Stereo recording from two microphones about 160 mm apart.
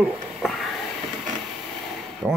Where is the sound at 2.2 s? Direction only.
5° right (ahead or behind).